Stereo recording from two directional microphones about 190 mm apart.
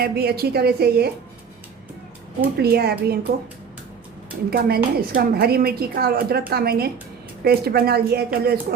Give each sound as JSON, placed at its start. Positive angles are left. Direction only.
{"t": 0.0, "sound": "a woman's voice", "side_deg": -55}
{"t": 2.6, "sound": "a woman's voice", "side_deg": -55}
{"t": 4.5, "sound": "a woman's voice", "side_deg": -50}